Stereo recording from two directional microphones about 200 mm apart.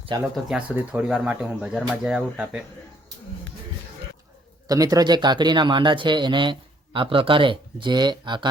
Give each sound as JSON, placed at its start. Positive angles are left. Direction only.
{"t": 0.1, "sound": "speech", "side_deg": -20}
{"t": 0.4, "sound": "speech", "side_deg": -5}
{"t": 4.7, "sound": "speech", "side_deg": -15}